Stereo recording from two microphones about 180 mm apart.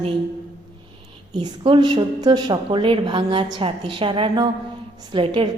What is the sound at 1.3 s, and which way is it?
A woman's voice, 25° right (ahead or behind).